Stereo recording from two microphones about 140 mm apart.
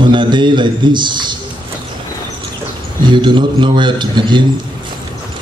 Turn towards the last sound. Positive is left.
turn(degrees=-35)  # may be behind; listen again after turning